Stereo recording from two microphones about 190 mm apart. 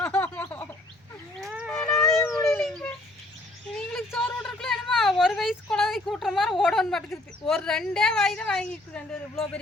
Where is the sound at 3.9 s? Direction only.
5° left (ahead or behind).